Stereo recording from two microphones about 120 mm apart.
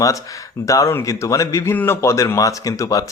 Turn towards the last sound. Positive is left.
turn(degrees=25)  # may be behind; listen again after turning